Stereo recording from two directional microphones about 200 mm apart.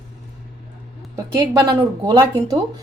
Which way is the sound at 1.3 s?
15° right (ahead or behind).